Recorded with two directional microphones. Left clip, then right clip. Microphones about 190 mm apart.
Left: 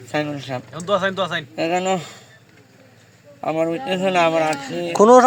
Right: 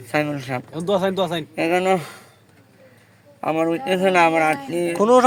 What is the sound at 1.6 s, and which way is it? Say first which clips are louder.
Speech: right 2 dB; 10° right (ahead or behind).